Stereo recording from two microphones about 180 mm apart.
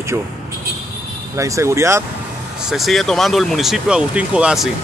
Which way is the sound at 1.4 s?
15° right (ahead or behind).